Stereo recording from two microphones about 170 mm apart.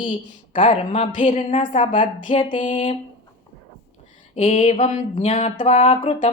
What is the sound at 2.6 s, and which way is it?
Speech, 30° left (ahead or behind).